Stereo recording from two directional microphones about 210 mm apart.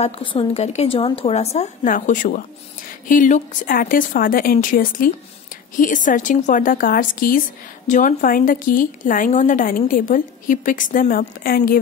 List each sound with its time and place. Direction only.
0.0 s a woman's voice: 25° left (ahead or behind); by 11.8 s 45° left (ahead or behind)